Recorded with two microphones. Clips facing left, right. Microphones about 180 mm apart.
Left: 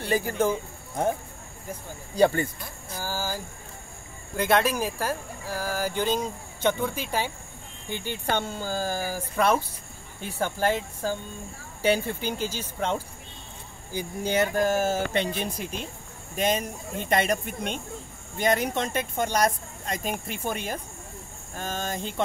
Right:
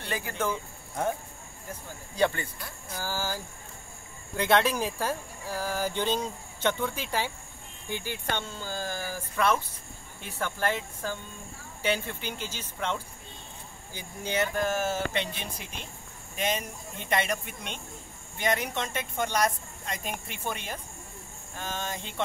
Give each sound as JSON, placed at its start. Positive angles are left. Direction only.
{"t": 0.0, "sound": "speech", "side_deg": 35}
{"t": 2.1, "sound": "speech", "side_deg": 40}
{"t": 3.0, "sound": "speech", "side_deg": 15}
{"t": 4.4, "sound": "speech", "side_deg": 10}
{"t": 7.9, "sound": "speech", "side_deg": -10}
{"t": 8.3, "sound": "speech", "side_deg": 45}